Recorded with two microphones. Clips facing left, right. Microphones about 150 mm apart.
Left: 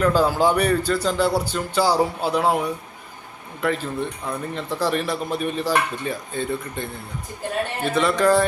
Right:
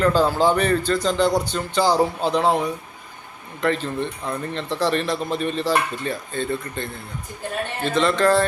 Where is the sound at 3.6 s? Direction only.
10° left (ahead or behind).